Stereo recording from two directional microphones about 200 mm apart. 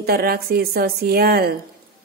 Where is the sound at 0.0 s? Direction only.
50° right (ahead or behind).